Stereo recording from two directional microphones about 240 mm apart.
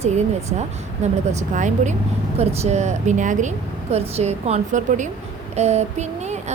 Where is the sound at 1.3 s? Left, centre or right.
Right.